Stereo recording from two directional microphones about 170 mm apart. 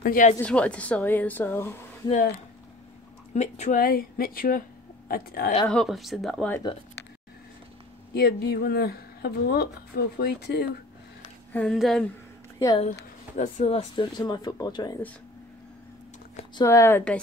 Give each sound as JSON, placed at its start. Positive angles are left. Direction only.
{"t": 0.0, "sound": "a woman's voice", "side_deg": 55}
{"t": 0.4, "sound": "a woman's voice", "side_deg": 5}
{"t": 3.3, "sound": "speech", "side_deg": 45}
{"t": 3.8, "sound": "speech", "side_deg": 60}
{"t": 5.7, "sound": "speech", "side_deg": 0}
{"t": 8.1, "sound": "speech", "side_deg": 70}
{"t": 11.5, "sound": "speech", "side_deg": 5}
{"t": 13.4, "sound": "speech", "side_deg": 45}
{"t": 14.1, "sound": "speech", "side_deg": 25}
{"t": 16.6, "sound": "a woman's voice", "side_deg": 15}